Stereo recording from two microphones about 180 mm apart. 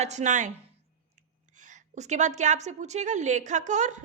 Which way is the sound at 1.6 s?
45° right (ahead or behind).